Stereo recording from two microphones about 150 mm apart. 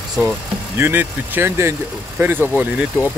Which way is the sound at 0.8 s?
15° right (ahead or behind).